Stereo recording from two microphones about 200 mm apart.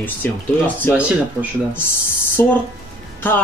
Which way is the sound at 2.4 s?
10° left (ahead or behind).